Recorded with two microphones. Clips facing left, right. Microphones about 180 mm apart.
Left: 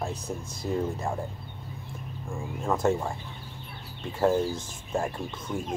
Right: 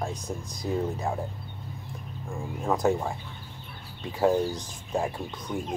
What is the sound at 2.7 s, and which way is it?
Speech, 5° right (ahead or behind).